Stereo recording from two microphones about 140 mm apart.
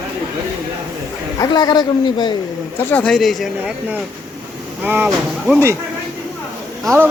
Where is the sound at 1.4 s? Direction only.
30° left (ahead or behind).